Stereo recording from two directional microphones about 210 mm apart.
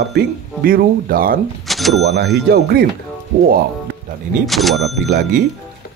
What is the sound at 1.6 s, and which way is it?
Speech, centre (ahead or behind).